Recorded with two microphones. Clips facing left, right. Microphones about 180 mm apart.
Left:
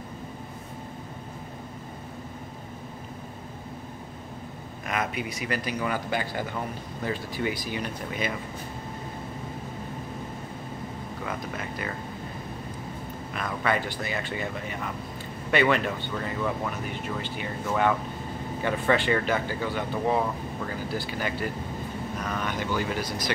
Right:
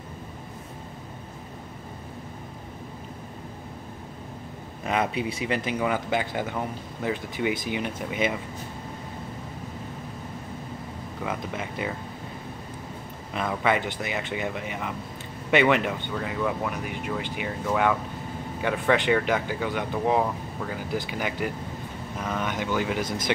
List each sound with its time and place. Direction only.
4.8 s speech: 30° right (ahead or behind)
13.7 s speech: 20° right (ahead or behind)